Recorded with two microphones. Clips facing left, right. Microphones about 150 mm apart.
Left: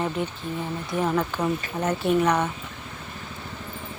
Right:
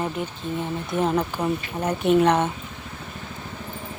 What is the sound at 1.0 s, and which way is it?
Speech, 15° right (ahead or behind).